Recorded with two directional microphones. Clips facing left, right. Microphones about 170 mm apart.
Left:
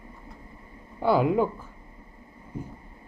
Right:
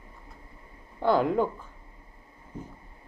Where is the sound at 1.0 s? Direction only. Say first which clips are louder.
Left 2 dB; 5° left (ahead or behind).